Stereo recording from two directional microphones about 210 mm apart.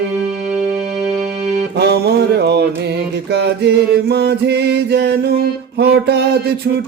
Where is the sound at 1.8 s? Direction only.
50° right (ahead or behind).